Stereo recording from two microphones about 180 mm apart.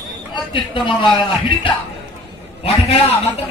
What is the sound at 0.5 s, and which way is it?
A man's voice, 25° left (ahead or behind).